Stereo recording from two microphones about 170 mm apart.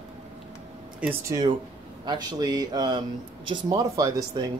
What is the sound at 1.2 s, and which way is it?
Speech, 25° right (ahead or behind).